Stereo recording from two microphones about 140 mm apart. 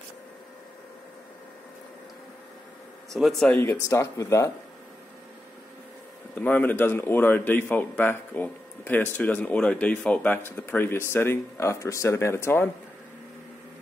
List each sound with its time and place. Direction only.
3.1 s speech: centre (ahead or behind)
3.4 s a man's voice: 10° left (ahead or behind)
6.3 s a man's voice: 10° left (ahead or behind)